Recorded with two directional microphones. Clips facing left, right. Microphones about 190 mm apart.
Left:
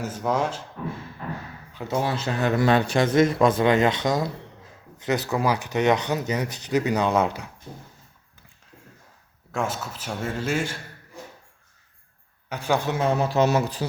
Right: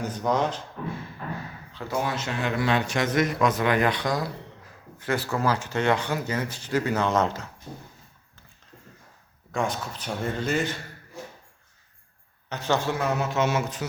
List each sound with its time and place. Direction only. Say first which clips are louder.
0.0 s speech: even; 5° left (ahead or behind)
1.7 s speech: left 4 dB; 20° left (ahead or behind)
2.0 s a man's voice: left 4 dB; 35° left (ahead or behind); by 7.5 s 15° left (ahead or behind)
9.5 s speech: even; 5° left (ahead or behind)
12.5 s speech: left 1 dB; 10° left (ahead or behind); by 13.8 s 35° left (ahead or behind)